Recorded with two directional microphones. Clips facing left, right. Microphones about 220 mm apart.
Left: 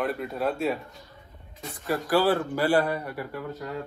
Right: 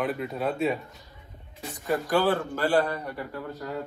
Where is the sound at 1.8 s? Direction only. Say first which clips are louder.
Left 1 dB; centre (ahead or behind).